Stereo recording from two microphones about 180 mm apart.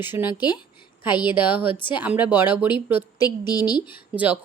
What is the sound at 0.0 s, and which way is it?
Speech, 10° right (ahead or behind).